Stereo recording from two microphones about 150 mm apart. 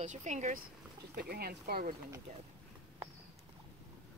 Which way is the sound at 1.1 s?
90° right.